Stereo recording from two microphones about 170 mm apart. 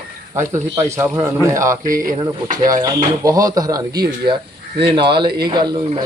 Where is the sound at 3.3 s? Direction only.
20° right (ahead or behind).